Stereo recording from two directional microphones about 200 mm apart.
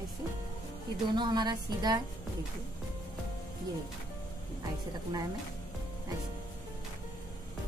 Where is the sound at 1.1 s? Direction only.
20° right (ahead or behind).